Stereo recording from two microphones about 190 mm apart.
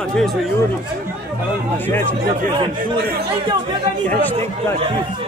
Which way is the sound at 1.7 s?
10° left (ahead or behind).